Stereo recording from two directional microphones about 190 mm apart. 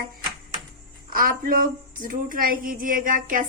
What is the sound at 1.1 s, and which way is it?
A woman's voice, 45° right (ahead or behind).